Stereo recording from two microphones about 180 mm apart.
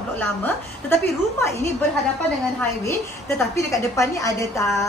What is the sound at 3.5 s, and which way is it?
A woman's voice, 15° left (ahead or behind).